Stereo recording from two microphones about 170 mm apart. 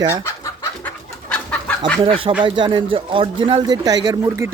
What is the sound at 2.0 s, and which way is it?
A man's voice, 30° right (ahead or behind).